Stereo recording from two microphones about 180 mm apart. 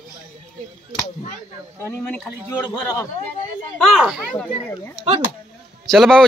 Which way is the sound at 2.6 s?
20° left (ahead or behind).